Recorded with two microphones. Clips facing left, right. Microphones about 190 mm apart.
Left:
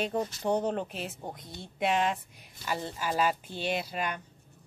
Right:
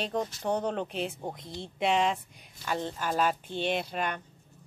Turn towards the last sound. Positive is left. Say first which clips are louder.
# right 1 dB
turn(degrees=5)  # may be behind; listen again after turning